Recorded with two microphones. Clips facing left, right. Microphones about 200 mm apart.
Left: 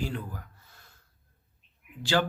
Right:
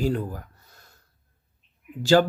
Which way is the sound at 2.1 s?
45° right (ahead or behind).